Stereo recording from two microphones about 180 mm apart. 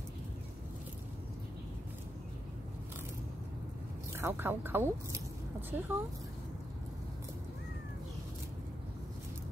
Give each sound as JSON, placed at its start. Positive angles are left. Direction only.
{"t": 4.2, "sound": "speech", "side_deg": -10}